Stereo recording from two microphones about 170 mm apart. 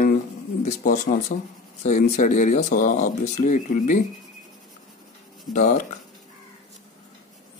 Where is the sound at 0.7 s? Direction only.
45° left (ahead or behind).